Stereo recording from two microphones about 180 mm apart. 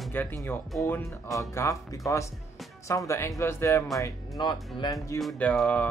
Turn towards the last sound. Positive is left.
turn(degrees=5)  # may be behind; listen again after turning